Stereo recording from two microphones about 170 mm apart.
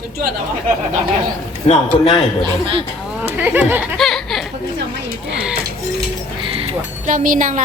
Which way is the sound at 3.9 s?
Centre (ahead or behind).